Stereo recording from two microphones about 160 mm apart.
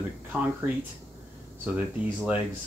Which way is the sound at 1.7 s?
10° right (ahead or behind).